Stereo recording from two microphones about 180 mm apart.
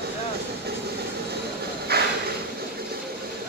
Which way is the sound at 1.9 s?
60° right (ahead or behind).